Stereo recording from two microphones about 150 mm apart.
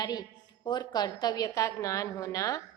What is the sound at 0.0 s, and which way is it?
A woman's voice, 25° left (ahead or behind).